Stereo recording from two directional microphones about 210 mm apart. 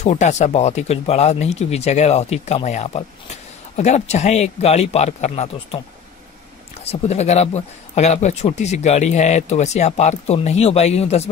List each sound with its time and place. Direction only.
0.0 s speech: 35° left (ahead or behind)
6.8 s speech: 30° left (ahead or behind)